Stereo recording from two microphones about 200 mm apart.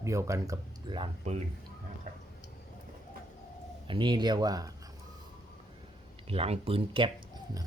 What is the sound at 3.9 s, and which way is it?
Speech, 25° right (ahead or behind).